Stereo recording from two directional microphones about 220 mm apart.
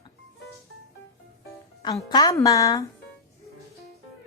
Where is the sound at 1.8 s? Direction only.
15° left (ahead or behind).